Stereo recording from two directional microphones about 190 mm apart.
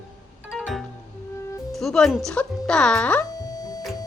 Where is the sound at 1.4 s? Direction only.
15° left (ahead or behind).